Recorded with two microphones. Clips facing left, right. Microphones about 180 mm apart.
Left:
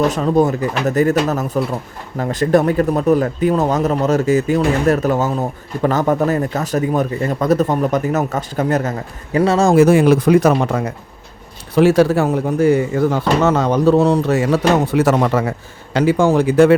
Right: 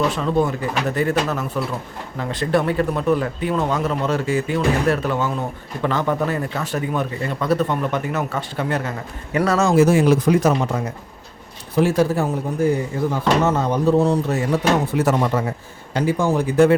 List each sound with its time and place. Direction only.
0.1 s speech: 40° left (ahead or behind)
9.3 s speech: 30° left (ahead or behind)
9.7 s speech: 60° left (ahead or behind)
11.7 s speech: 90° left